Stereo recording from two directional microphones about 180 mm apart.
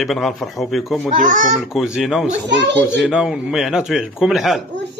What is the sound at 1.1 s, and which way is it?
Speech, 45° right (ahead or behind).